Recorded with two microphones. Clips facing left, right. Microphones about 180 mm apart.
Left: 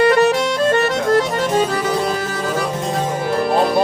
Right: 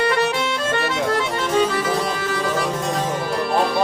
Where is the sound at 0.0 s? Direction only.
45° left (ahead or behind).